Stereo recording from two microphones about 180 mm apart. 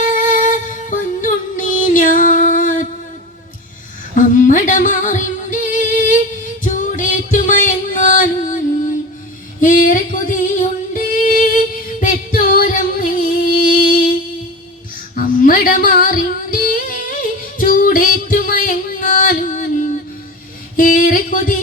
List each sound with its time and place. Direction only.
0.1 s music: 45° left (ahead or behind)
4.2 s singing: 45° left (ahead or behind)
9.6 s music: 45° left (ahead or behind)
15.1 s female singing: 50° left (ahead or behind)
17.6 s music: 50° left (ahead or behind)
20.7 s a sound: 50° left (ahead or behind)